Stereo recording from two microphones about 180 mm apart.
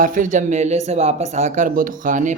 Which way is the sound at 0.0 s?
45° right (ahead or behind).